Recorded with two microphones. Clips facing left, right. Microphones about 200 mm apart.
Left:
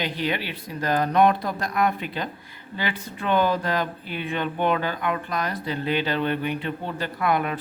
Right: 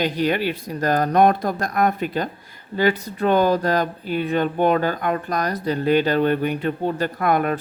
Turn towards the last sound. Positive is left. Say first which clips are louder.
# right 4 dB
turn(degrees=-45)  # may be behind; listen again after turning